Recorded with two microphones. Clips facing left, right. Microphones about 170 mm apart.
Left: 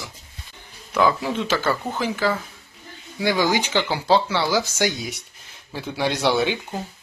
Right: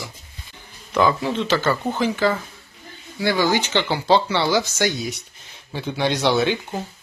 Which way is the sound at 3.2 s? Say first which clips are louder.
Right 1 dB; 15° left (ahead or behind).